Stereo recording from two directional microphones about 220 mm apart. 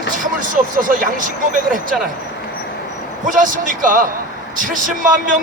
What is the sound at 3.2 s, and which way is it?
Speech, 35° right (ahead or behind).